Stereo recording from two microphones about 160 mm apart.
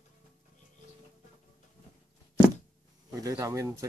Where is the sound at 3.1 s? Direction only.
20° right (ahead or behind).